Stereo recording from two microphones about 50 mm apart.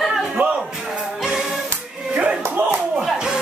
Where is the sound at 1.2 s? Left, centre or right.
Centre.